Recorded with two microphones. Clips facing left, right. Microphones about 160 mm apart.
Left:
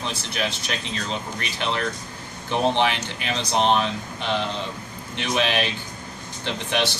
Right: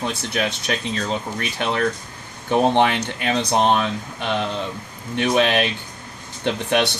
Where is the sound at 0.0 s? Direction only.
50° right (ahead or behind).